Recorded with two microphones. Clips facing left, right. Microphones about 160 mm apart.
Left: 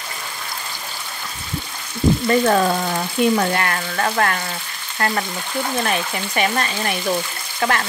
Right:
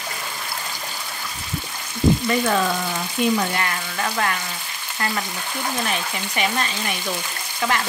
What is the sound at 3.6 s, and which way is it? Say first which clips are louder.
Speech: left 4 dB; 55° left (ahead or behind).